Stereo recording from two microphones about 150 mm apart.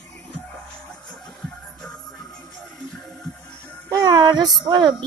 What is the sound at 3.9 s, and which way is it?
Music, 25° right (ahead or behind).